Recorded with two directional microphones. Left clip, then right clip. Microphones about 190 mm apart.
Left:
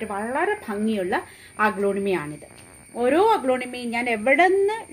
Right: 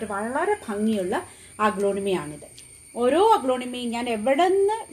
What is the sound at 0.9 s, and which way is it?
Speech, 35° left (ahead or behind).